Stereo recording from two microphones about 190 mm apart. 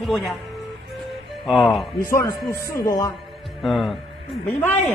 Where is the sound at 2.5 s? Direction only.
15° left (ahead or behind).